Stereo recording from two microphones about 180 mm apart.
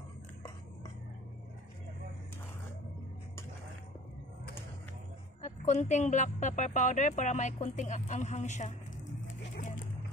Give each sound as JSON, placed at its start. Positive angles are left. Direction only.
{"t": 5.4, "sound": "speech", "side_deg": 40}